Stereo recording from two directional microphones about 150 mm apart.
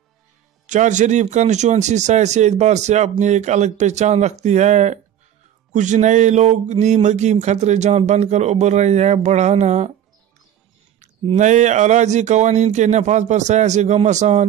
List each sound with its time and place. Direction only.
0.7 s speech: 55° right (ahead or behind)
11.2 s speech: 55° right (ahead or behind)